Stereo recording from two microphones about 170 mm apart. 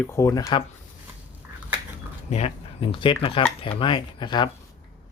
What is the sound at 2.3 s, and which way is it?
Speech, 35° left (ahead or behind).